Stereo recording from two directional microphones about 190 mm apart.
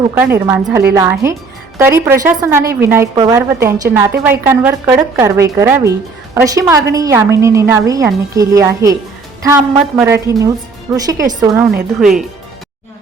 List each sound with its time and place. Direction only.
0.1 s a woman's voice: 10° right (ahead or behind)
11.9 s speech: 5° right (ahead or behind)